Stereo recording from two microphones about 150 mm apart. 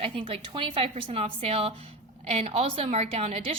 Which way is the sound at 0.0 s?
35° right (ahead or behind).